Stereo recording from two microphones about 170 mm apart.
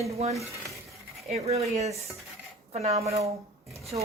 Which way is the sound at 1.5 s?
40° right (ahead or behind).